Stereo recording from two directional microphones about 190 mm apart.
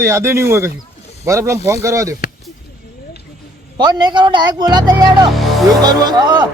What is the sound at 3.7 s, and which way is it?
A man's voice, 25° right (ahead or behind).